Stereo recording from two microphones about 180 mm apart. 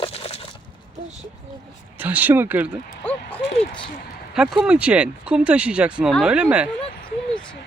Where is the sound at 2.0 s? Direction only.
10° right (ahead or behind).